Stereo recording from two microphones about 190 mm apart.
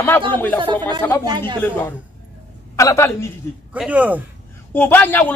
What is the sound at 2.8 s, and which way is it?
Speech, 15° left (ahead or behind).